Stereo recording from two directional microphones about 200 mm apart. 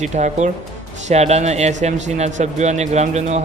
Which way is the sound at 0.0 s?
35° right (ahead or behind).